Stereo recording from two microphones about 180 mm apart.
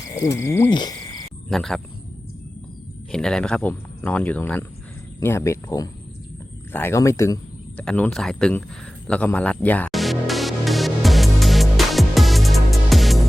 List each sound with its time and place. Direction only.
0.2 s speech: 15° left (ahead or behind)
0.7 s frog: 25° left (ahead or behind)
1.5 s speech: centre (ahead or behind)
3.1 s speech: 5° left (ahead or behind)
9.6 s music: 10° left (ahead or behind)